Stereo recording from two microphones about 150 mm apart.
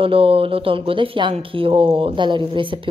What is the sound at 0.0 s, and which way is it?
Speech, 40° right (ahead or behind).